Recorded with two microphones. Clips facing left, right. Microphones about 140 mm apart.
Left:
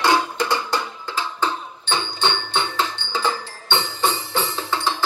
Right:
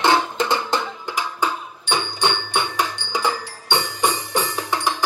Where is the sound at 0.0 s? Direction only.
20° right (ahead or behind).